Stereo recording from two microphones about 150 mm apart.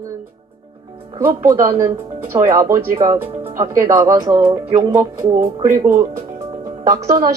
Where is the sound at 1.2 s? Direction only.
15° right (ahead or behind).